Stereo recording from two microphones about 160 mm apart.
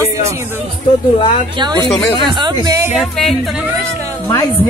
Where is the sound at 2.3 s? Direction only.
25° right (ahead or behind).